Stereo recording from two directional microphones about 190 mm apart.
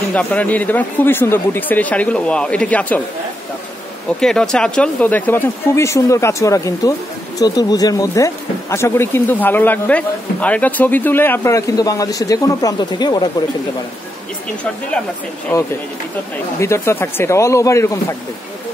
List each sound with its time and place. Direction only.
0.1 s speech: 10° left (ahead or behind)
4.2 s speech: 5° left (ahead or behind); by 13.3 s 20° left (ahead or behind)
16.5 s speech: 15° left (ahead or behind)